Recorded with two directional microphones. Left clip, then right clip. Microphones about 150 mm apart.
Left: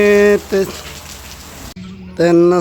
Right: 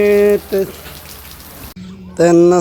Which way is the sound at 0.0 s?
15° left (ahead or behind).